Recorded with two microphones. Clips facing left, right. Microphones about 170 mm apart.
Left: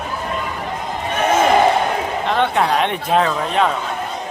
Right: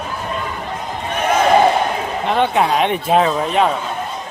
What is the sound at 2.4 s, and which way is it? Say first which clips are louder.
Speech: right 2 dB; 10° right (ahead or behind).